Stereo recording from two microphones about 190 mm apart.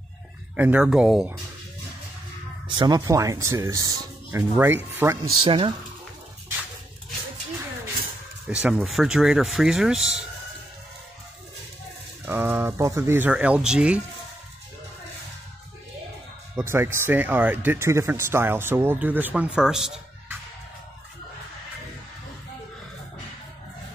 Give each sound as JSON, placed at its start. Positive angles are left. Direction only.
{"t": 0.6, "sound": "speech", "side_deg": -5}
{"t": 2.8, "sound": "speech", "side_deg": -20}
{"t": 5.4, "sound": "speech", "side_deg": -25}
{"t": 8.5, "sound": "speech", "side_deg": -5}
{"t": 12.3, "sound": "speech", "side_deg": -10}
{"t": 16.5, "sound": "speech", "side_deg": -15}